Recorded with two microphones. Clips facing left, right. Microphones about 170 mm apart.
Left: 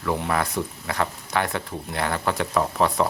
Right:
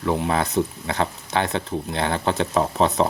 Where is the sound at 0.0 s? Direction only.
20° right (ahead or behind).